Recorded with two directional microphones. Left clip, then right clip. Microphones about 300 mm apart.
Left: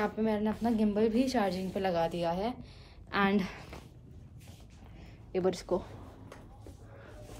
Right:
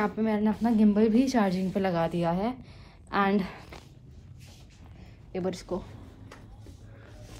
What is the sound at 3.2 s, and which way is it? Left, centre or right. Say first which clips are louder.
Speech: right 3 dB; centre.